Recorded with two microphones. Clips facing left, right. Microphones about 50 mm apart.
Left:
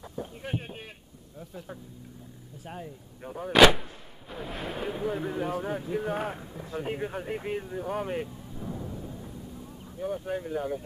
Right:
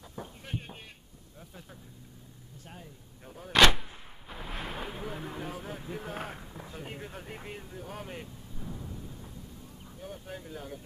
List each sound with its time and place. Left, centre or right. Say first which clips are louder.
0.4 s a sound: left 6 dB; centre
2.6 s speech: left 10 dB; left
3.5 s speech: left 4 dB; centre
6.8 s speech: left 12 dB; centre